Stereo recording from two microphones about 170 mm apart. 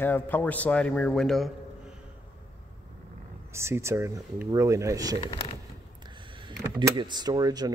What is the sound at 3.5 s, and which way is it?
Speech, 15° right (ahead or behind).